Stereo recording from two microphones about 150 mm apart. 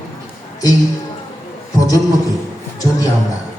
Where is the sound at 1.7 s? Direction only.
25° left (ahead or behind).